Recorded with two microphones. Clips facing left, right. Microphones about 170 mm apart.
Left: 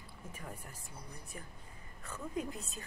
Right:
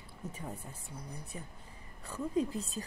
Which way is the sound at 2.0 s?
30° right (ahead or behind).